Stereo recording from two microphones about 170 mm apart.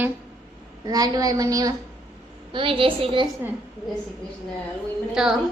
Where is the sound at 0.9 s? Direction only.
20° right (ahead or behind).